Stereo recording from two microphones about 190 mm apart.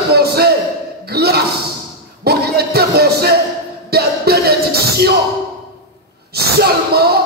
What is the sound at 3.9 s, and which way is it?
Music, 55° right (ahead or behind).